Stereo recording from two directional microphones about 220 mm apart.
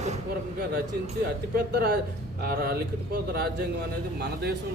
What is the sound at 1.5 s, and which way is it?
Speech, 45° right (ahead or behind).